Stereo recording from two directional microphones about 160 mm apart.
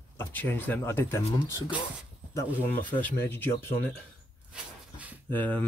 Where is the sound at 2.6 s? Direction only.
10° left (ahead or behind).